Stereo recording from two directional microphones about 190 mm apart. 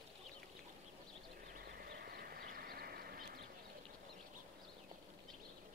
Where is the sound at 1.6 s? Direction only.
55° right (ahead or behind).